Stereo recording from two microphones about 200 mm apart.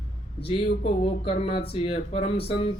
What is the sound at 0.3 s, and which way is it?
Speech, 30° left (ahead or behind).